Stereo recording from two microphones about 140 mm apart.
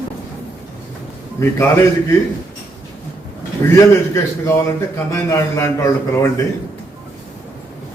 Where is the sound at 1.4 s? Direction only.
20° left (ahead or behind).